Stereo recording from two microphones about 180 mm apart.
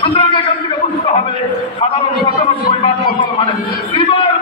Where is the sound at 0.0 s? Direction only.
30° left (ahead or behind).